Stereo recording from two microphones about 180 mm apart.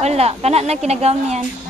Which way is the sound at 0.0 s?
35° right (ahead or behind).